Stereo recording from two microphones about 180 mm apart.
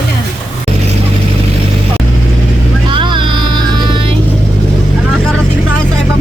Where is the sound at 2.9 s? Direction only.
25° right (ahead or behind).